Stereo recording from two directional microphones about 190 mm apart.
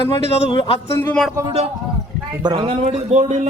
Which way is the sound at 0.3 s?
25° left (ahead or behind).